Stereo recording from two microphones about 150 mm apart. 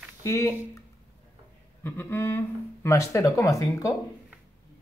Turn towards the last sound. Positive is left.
turn(degrees=20)  # may be behind; listen again after turning